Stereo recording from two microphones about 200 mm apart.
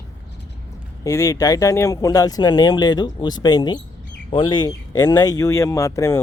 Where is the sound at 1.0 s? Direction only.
15° left (ahead or behind).